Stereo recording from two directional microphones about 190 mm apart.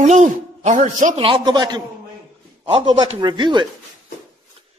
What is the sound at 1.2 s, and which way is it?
Speech, 25° right (ahead or behind).